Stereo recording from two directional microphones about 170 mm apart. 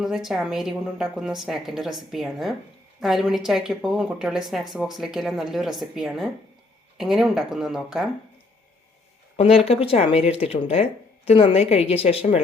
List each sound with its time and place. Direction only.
0.0 s a woman's voice: 5° right (ahead or behind)
9.3 s a woman's voice: 35° left (ahead or behind)